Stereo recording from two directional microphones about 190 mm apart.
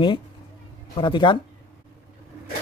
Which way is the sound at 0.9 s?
25° left (ahead or behind).